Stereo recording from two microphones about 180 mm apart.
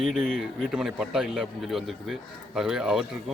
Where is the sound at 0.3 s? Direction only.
5° right (ahead or behind).